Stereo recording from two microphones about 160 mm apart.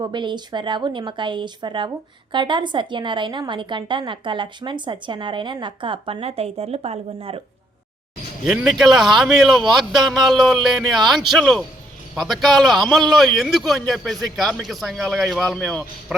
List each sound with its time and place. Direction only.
0.0 s a woman's voice: 30° right (ahead or behind)
8.4 s a man's voice: centre (ahead or behind)